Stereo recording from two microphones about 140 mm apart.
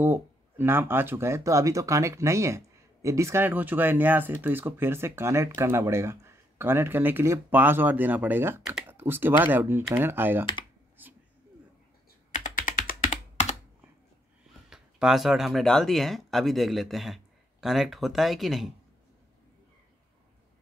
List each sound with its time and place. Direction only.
0.0 s speech: 15° right (ahead or behind)
11.0 s a sound: 15° right (ahead or behind)
12.3 s computer keyboard: 80° left
14.7 s speech: 5° right (ahead or behind)